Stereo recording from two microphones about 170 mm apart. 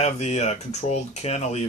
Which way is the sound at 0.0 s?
40° left (ahead or behind).